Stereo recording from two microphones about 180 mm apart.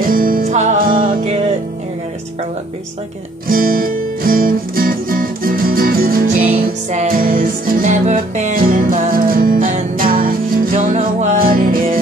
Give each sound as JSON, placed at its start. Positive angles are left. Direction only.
{"t": 0.0, "sound": "music", "side_deg": -50}
{"t": 3.4, "sound": "music", "side_deg": -50}